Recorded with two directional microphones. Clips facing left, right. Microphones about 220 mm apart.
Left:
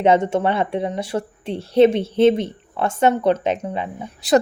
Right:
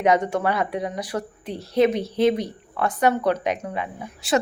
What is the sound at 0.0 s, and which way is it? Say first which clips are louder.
Speech: left 4 dB; 25° left (ahead or behind).